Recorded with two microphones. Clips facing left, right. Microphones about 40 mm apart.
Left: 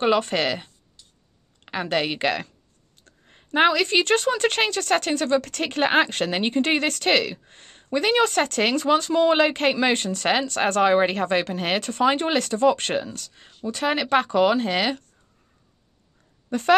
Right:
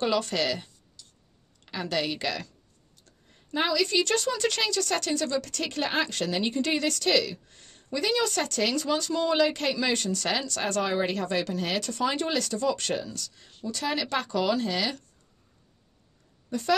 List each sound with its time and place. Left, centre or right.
0.0 s speech: left
1.7 s a woman's voice: left
16.4 s speech: left